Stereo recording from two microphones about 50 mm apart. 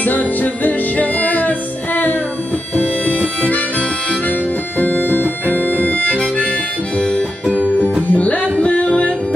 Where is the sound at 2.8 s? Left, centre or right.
Left.